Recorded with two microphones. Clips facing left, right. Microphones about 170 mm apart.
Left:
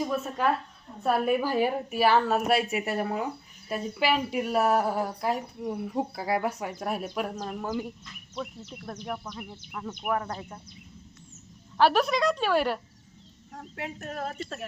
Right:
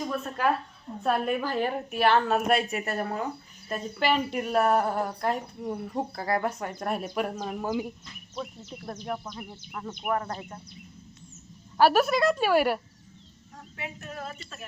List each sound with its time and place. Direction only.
1.0 s a woman's voice: 5° left (ahead or behind)
11.8 s a woman's voice: 5° right (ahead or behind)
13.7 s speech: 50° left (ahead or behind)